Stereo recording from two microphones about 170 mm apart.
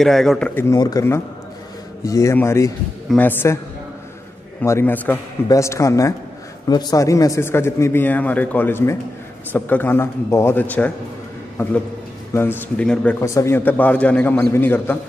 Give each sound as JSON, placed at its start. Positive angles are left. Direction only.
{"t": 0.0, "sound": "speech", "side_deg": 0}
{"t": 0.6, "sound": "a man's voice", "side_deg": 20}
{"t": 4.6, "sound": "a man's voice", "side_deg": 15}
{"t": 12.4, "sound": "a man's voice", "side_deg": 10}